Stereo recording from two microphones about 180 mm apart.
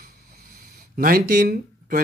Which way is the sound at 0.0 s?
45° right (ahead or behind).